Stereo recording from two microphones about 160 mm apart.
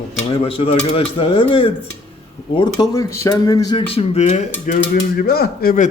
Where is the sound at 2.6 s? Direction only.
25° left (ahead or behind); by 4.4 s 45° left (ahead or behind).